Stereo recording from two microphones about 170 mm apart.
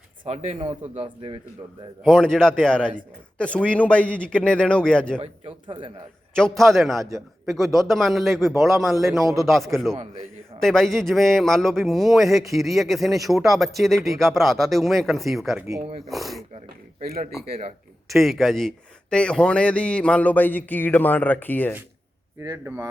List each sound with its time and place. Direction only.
0.3 s a man's voice: 35° right (ahead or behind)
2.0 s a man's voice: 5° left (ahead or behind)
5.2 s speech: 30° right (ahead or behind)
6.6 s a man's voice: centre (ahead or behind)
18.1 s a man's voice: centre (ahead or behind)
22.4 s a man's voice: 15° right (ahead or behind)